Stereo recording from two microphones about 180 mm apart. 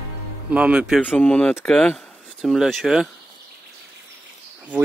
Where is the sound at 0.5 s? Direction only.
5° right (ahead or behind).